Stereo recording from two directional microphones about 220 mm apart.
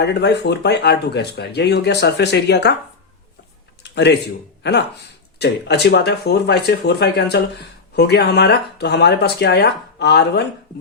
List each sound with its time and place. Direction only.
0.0 s speech: 50° left (ahead or behind)
3.9 s speech: 50° left (ahead or behind)
5.4 s speech: 50° left (ahead or behind)